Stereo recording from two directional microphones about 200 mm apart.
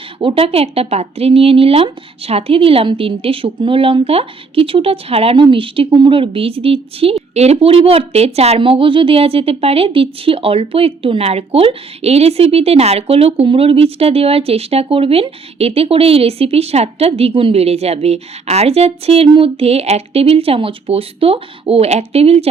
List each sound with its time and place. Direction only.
0.2 s speech: 25° right (ahead or behind)